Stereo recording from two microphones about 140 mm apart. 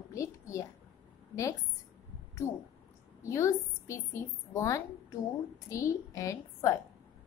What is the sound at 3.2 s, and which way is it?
A woman's voice, 20° left (ahead or behind).